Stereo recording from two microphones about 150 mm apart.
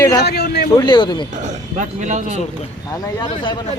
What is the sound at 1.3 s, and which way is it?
Speech, 55° right (ahead or behind).